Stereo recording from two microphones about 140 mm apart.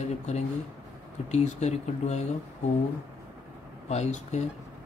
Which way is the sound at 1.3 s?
55° left (ahead or behind).